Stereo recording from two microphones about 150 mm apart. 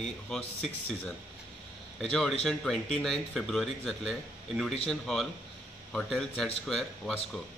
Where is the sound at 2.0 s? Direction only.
5° left (ahead or behind).